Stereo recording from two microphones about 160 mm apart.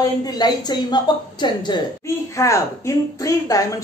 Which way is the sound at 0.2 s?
25° left (ahead or behind).